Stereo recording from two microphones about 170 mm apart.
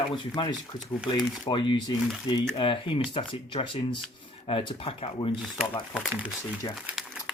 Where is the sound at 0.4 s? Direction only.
30° left (ahead or behind).